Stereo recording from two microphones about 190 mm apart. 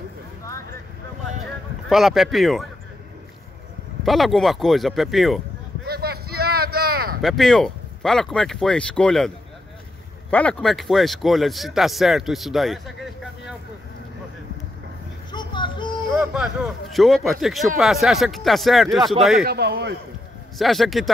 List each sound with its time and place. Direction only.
1.9 s a man's voice: centre (ahead or behind)
4.0 s a man's voice: centre (ahead or behind)
5.9 s vehicle: 55° right (ahead or behind)
7.2 s a man's voice: centre (ahead or behind)
10.3 s a man's voice: 5° left (ahead or behind)
15.3 s child singing: 25° left (ahead or behind)
16.1 s a man's voice: centre (ahead or behind)
19.4 s a man's voice: 55° right (ahead or behind)
20.5 s a man's voice: centre (ahead or behind)